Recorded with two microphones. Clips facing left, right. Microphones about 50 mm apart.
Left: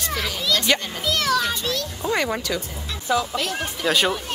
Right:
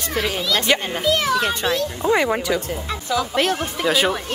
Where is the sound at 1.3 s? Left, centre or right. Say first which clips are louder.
Right 3 dB; right.